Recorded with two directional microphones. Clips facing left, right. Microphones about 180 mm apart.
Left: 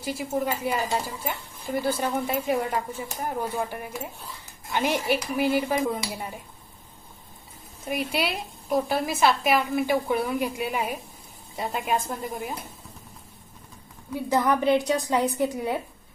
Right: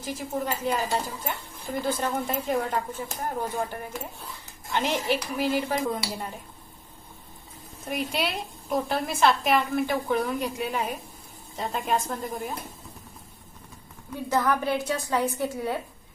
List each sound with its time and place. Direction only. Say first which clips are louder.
0.0 s speech: left 3 dB; 10° left (ahead or behind)
7.9 s a woman's voice: left 1 dB; centre (ahead or behind)
14.3 s speech: left 4 dB; 15° left (ahead or behind)